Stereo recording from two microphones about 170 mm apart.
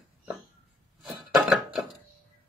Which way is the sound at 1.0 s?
Centre (ahead or behind).